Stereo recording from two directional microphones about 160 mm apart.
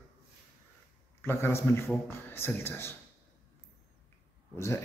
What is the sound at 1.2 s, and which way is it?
Speech, 15° left (ahead or behind).